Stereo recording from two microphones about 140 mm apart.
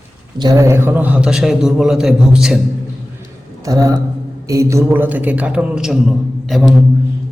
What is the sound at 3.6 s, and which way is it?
A man's voice, 25° right (ahead or behind).